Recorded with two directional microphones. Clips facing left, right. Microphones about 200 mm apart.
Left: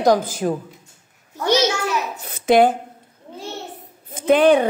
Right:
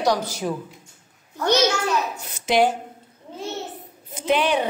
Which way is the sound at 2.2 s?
55° left (ahead or behind).